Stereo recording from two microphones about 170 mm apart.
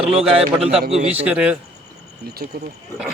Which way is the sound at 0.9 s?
40° right (ahead or behind).